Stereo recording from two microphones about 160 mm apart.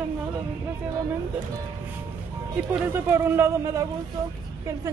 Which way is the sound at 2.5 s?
15° right (ahead or behind).